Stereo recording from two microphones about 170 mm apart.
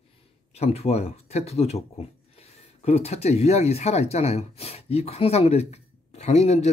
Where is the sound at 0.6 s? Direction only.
40° left (ahead or behind).